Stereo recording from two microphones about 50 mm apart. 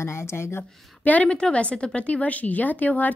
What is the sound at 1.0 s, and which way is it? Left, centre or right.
Speech, left.